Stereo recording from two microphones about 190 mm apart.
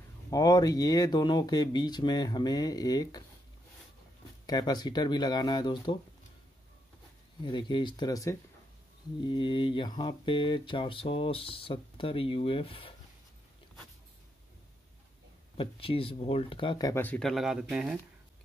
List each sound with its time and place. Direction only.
0.3 s speech: 20° left (ahead or behind)
4.5 s speech: 20° left (ahead or behind)
7.4 s speech: 25° left (ahead or behind)
15.5 s speech: 30° left (ahead or behind); by 17.9 s centre (ahead or behind)